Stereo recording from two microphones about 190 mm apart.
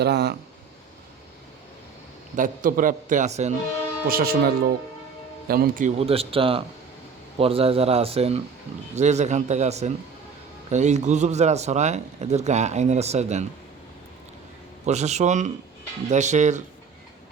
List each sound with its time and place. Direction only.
0.0 s speech: 60° right (ahead or behind)
2.3 s a man's voice: 45° right (ahead or behind)
4.0 s a man's voice: 50° right (ahead or behind)
6.0 s speech: 30° right (ahead or behind)
14.8 s speech: 35° right (ahead or behind)